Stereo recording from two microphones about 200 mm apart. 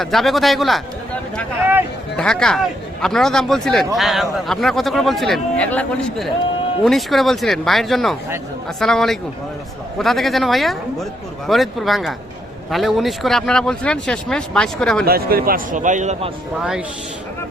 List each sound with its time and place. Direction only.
0.0 s a man's voice: centre (ahead or behind)
2.1 s a man's voice: 5° left (ahead or behind)
15.0 s a man's voice: 50° right (ahead or behind)